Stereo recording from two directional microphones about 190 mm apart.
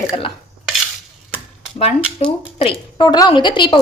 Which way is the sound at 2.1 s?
30° left (ahead or behind).